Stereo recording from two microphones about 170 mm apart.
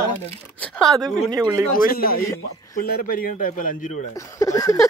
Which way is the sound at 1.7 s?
60° left (ahead or behind).